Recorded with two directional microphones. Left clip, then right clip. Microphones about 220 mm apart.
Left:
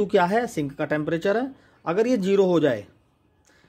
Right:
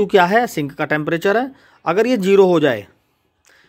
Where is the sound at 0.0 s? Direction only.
25° right (ahead or behind).